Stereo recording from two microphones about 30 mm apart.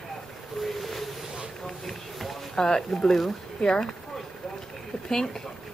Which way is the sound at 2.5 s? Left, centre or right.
Left.